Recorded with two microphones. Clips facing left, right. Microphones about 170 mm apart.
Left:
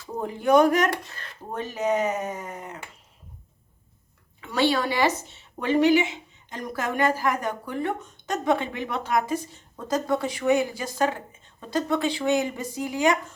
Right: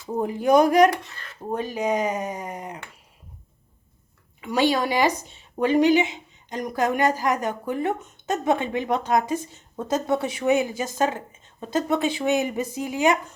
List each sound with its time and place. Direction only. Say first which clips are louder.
0.0 s a woman's voice: right 3 dB; 15° right (ahead or behind)
4.4 s a woman's voice: right 2 dB; 15° right (ahead or behind)